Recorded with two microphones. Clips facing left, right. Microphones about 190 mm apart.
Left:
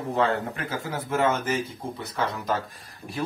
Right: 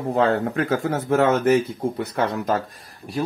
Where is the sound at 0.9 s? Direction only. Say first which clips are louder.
Right 4 dB; 70° right (ahead or behind).